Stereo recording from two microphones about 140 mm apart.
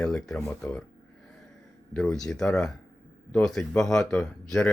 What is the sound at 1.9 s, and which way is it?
Speech, 5° left (ahead or behind).